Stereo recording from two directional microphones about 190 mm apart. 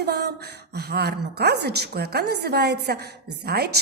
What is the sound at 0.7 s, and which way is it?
A woman's voice, 55° right (ahead or behind).